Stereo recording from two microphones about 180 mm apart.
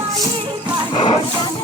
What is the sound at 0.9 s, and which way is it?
Music, 25° left (ahead or behind).